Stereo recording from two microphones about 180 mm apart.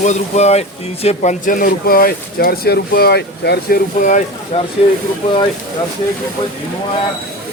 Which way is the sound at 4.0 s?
45° left (ahead or behind).